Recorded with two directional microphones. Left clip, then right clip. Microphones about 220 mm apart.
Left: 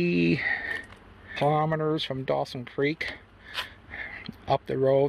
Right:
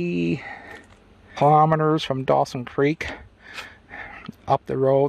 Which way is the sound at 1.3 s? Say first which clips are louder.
Right 9 dB; 35° right (ahead or behind).